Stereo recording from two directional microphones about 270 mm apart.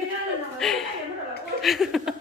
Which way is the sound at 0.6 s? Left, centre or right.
Centre.